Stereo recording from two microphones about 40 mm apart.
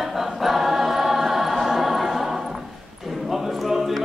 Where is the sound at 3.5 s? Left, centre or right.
Centre.